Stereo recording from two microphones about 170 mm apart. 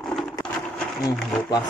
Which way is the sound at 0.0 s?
5° left (ahead or behind).